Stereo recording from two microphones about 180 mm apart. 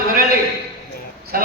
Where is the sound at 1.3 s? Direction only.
55° right (ahead or behind).